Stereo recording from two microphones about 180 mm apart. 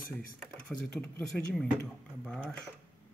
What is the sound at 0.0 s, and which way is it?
Speech, 50° left (ahead or behind).